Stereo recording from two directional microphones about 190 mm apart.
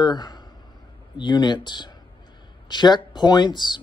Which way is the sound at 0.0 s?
20° left (ahead or behind).